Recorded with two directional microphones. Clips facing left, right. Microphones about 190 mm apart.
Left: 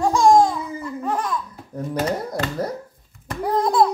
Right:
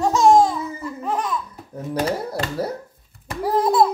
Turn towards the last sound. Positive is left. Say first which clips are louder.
# right 1 dB
turn(degrees=-5)  # may be behind; listen again after turning